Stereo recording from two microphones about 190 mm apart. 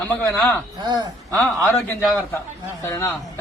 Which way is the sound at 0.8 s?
20° right (ahead or behind).